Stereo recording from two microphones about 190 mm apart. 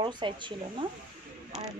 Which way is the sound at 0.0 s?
25° right (ahead or behind).